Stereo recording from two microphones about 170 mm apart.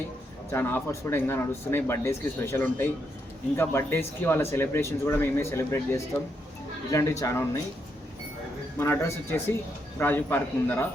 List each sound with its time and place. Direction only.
0.5 s speech: 15° left (ahead or behind)
8.8 s speech: 15° left (ahead or behind)